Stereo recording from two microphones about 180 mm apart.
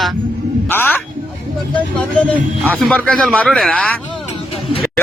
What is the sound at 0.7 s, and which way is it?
Speech, 10° left (ahead or behind).